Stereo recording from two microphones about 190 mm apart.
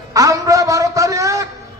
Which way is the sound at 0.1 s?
15° right (ahead or behind).